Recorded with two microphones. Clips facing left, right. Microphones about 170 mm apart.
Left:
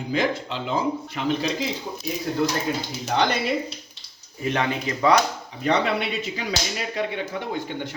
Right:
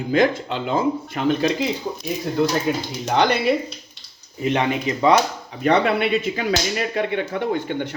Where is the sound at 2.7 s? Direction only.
65° right (ahead or behind).